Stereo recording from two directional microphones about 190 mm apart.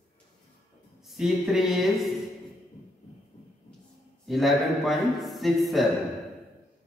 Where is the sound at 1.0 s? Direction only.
Centre (ahead or behind).